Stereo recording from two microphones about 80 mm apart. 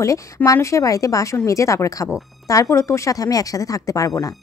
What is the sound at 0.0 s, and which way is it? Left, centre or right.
Speech, left.